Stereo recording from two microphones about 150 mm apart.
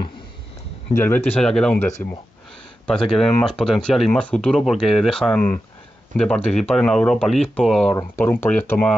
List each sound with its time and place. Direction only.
0.9 s speech: 15° left (ahead or behind)
2.9 s speech: 5° left (ahead or behind)
7.9 s speech: 15° left (ahead or behind)